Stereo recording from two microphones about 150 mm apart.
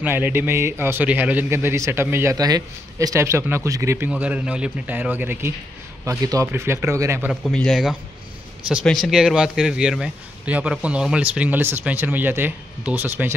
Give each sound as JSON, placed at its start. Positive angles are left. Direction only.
{"t": 0.0, "sound": "speech", "side_deg": -15}
{"t": 4.1, "sound": "speech", "side_deg": -10}
{"t": 7.4, "sound": "speech", "side_deg": 5}